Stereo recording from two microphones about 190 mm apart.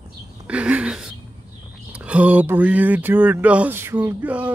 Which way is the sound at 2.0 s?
5° right (ahead or behind).